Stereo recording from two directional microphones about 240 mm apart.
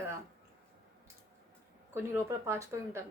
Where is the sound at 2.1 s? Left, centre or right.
Centre.